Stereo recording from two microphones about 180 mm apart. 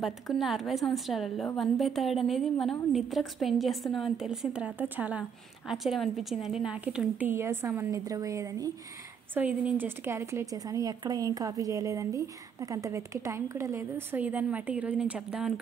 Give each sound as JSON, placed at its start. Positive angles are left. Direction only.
{"t": 0.0, "sound": "a woman's voice", "side_deg": 0}